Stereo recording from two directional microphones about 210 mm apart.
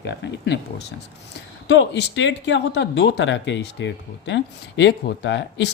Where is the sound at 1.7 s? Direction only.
55° left (ahead or behind).